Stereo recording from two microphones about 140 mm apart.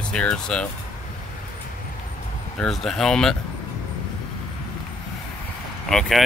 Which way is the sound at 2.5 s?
5° left (ahead or behind).